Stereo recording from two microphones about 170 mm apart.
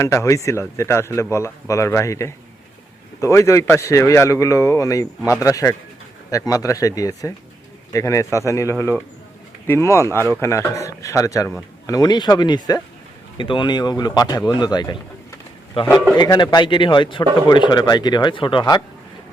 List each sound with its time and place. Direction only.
0.0 s speech: 15° left (ahead or behind)
16.1 s speech: 25° left (ahead or behind)